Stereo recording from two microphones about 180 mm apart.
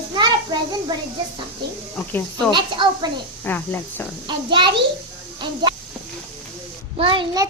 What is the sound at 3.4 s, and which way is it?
Speech, 10° left (ahead or behind).